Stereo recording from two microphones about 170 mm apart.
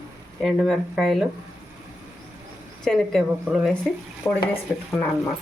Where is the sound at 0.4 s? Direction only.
Centre (ahead or behind).